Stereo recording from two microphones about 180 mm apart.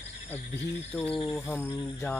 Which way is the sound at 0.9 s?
10° left (ahead or behind).